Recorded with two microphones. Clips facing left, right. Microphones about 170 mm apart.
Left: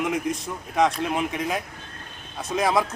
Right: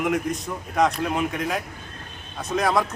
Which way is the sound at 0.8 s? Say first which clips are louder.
Even; centre (ahead or behind).